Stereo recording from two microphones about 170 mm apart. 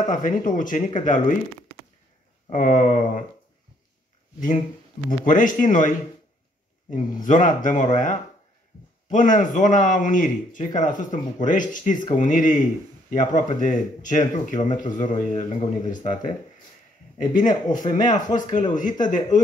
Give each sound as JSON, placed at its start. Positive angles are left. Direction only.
{"t": 0.0, "sound": "speech", "side_deg": 50}
{"t": 2.5, "sound": "speech", "side_deg": 50}
{"t": 5.2, "sound": "speech", "side_deg": 50}
{"t": 7.2, "sound": "speech", "side_deg": 50}